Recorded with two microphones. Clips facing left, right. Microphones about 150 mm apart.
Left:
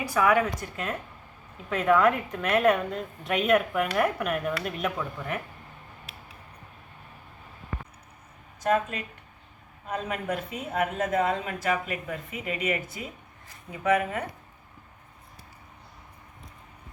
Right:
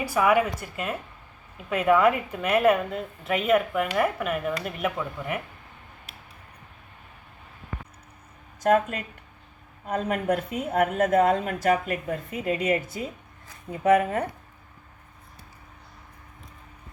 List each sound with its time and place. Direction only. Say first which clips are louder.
0.2 s a woman's voice: right 1 dB; 10° right (ahead or behind)
8.6 s a woman's voice: right 4 dB; 50° right (ahead or behind)